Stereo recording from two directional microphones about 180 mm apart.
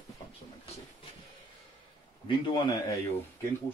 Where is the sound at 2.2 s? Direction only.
20° left (ahead or behind).